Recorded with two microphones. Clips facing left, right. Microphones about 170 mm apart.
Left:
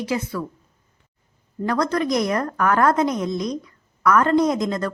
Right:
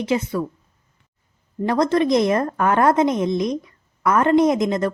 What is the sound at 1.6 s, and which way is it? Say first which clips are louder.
A woman's voice: right 4 dB; 25° right (ahead or behind).